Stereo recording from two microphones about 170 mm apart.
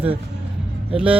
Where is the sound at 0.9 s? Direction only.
5° right (ahead or behind).